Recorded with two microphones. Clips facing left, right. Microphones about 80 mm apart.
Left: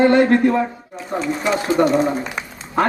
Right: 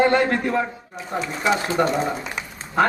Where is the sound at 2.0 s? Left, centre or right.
Left.